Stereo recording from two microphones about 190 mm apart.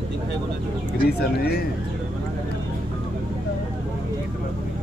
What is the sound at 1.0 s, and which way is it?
Speech, 55° left (ahead or behind).